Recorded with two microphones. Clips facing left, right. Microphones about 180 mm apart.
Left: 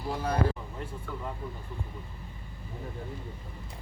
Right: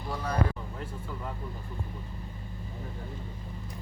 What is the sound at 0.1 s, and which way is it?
Speech, 30° left (ahead or behind).